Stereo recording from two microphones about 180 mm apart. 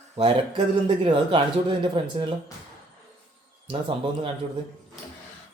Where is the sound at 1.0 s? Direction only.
25° right (ahead or behind).